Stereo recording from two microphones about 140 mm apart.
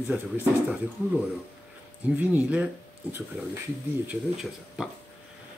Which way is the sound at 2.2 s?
10° right (ahead or behind).